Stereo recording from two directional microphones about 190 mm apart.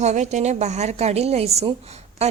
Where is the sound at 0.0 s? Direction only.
35° right (ahead or behind).